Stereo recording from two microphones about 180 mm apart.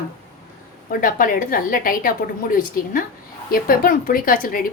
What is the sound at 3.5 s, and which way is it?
Speech, 55° left (ahead or behind).